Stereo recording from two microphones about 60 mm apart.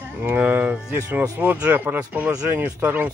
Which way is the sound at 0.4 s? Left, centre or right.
Right.